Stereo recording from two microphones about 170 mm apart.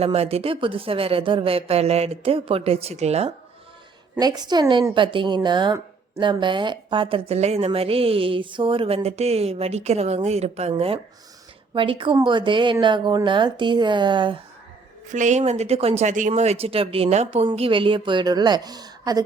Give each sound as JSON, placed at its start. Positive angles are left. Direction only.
{"t": 0.0, "sound": "speech", "side_deg": -35}
{"t": 4.2, "sound": "a woman's voice", "side_deg": -25}
{"t": 15.1, "sound": "a woman's voice", "side_deg": -45}